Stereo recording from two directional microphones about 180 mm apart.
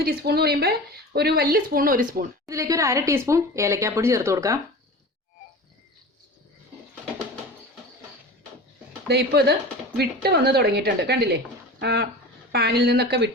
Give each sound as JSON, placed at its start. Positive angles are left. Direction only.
{"t": 0.0, "sound": "speech", "side_deg": -60}
{"t": 2.5, "sound": "speech", "side_deg": -15}
{"t": 9.0, "sound": "speech", "side_deg": -65}